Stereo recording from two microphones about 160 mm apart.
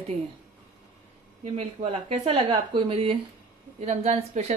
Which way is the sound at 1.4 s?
40° right (ahead or behind).